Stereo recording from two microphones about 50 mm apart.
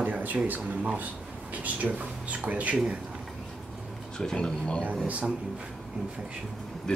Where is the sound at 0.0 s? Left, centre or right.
Right.